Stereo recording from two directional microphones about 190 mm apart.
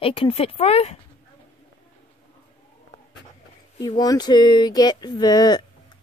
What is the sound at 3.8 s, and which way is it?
Speech, 20° left (ahead or behind).